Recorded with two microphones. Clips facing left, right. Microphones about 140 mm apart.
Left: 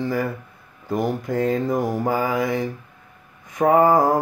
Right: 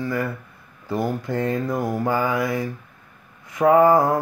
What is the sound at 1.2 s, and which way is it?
Speech, 10° left (ahead or behind).